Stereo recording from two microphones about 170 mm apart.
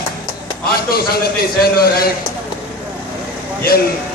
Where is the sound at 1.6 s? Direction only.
65° left (ahead or behind).